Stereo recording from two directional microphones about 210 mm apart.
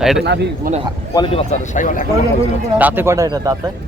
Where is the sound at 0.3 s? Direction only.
55° right (ahead or behind).